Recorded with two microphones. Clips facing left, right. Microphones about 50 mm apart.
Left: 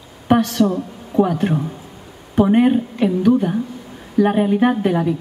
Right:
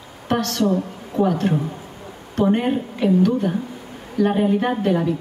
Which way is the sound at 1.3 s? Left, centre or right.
Centre.